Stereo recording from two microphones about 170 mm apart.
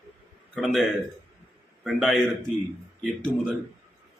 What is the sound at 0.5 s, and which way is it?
A man's voice, centre (ahead or behind).